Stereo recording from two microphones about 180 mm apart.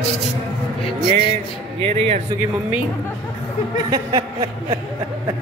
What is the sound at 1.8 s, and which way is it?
Speech, 30° right (ahead or behind).